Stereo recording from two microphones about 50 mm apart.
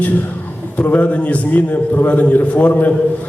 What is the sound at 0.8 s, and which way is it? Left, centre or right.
A man's voice, left.